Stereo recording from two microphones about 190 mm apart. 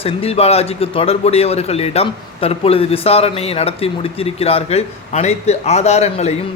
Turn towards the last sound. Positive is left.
turn(degrees=35)  # may be behind; listen again after turning